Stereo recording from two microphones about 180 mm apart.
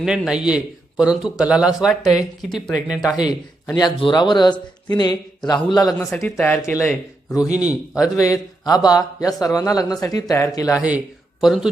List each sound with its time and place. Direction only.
0.0 s a man's voice: 5° right (ahead or behind)
3.8 s speech: 25° left (ahead or behind)
6.1 s a man's voice: centre (ahead or behind)
7.4 s speech: 5° right (ahead or behind)
8.0 s speech: 20° left (ahead or behind)
10.8 s a man's voice: 5° right (ahead or behind)